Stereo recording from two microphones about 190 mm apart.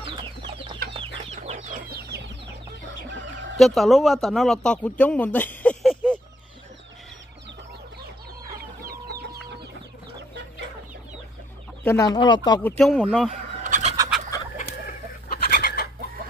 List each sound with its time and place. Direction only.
0.0 s chicken: 25° right (ahead or behind)
1.9 s chicken: 55° right (ahead or behind)
3.5 s a man's voice: centre (ahead or behind)
11.8 s speech: 15° left (ahead or behind)
12.6 s speech: centre (ahead or behind)
13.7 s bird: 40° right (ahead or behind)
15.2 s bird: 55° left (ahead or behind)